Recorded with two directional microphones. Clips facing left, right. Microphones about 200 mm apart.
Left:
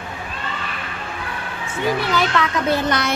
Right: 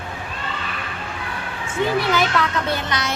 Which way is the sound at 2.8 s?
55° left (ahead or behind).